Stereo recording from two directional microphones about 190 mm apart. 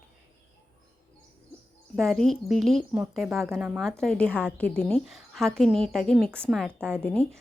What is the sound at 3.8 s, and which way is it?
A woman's voice, centre (ahead or behind).